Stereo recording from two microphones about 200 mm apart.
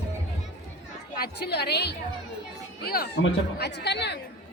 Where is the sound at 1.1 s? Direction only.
50° left (ahead or behind).